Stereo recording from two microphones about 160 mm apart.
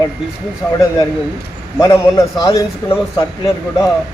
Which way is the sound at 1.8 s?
20° left (ahead or behind).